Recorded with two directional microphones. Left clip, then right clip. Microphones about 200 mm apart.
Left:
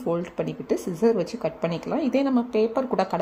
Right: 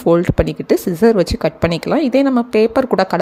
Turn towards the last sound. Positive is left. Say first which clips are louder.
# right 10 dB
turn(degrees=-35)  # may be behind; listen again after turning